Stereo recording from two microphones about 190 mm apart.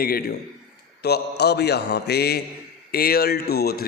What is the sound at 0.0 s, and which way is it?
A man's voice, 55° left (ahead or behind).